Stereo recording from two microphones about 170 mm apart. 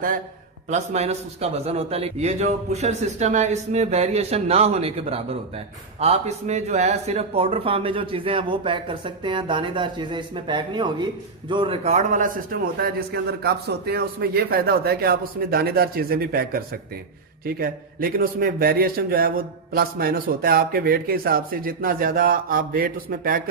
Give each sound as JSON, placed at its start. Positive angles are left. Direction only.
{"t": 0.7, "sound": "a man's voice", "side_deg": -40}